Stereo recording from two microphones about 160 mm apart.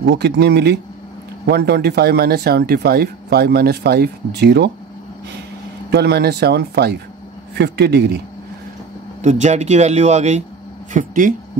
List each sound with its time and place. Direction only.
0.1 s speech: 90° right
5.9 s speech: 90° right
9.2 s speech: 45° right (ahead or behind)